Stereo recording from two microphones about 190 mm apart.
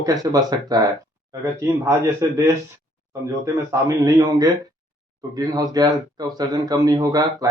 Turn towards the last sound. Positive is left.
turn(degrees=-20)  # may be behind; listen again after turning